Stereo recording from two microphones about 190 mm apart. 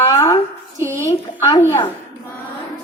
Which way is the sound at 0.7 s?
15° right (ahead or behind).